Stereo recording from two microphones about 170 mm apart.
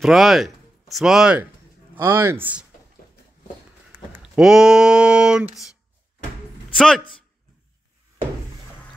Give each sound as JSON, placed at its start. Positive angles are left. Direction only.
{"t": 0.0, "sound": "speech", "side_deg": 0}
{"t": 3.0, "sound": "a sound", "side_deg": 60}
{"t": 3.9, "sound": "speech", "side_deg": -5}
{"t": 6.7, "sound": "speech", "side_deg": 5}